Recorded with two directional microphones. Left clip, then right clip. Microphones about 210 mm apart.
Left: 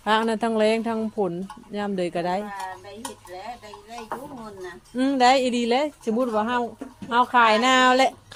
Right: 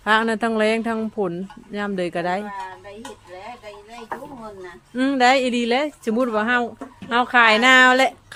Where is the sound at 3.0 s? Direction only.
55° left (ahead or behind).